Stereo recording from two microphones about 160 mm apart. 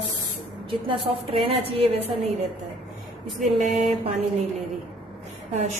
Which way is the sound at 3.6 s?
50° right (ahead or behind).